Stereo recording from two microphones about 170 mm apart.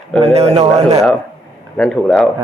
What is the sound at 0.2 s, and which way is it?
Speech, 35° right (ahead or behind).